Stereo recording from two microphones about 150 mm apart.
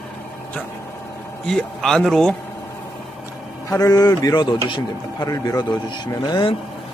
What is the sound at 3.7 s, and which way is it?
Speech, 25° left (ahead or behind).